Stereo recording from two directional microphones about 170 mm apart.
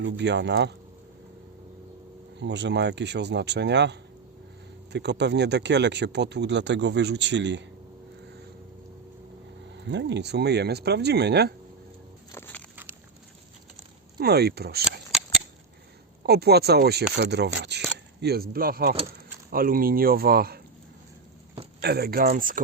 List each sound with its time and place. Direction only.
0.0 s speech: 90° right
2.4 s speech: 90° right
9.7 s speech: 90° right
12.3 s a sound: 10° left (ahead or behind)
12.7 s a sound: 10° right (ahead or behind)
14.2 s speech: 70° right (ahead or behind)
16.2 s speech: 70° right (ahead or behind)
21.8 s speech: 70° right (ahead or behind); by 22.6 s 55° right (ahead or behind)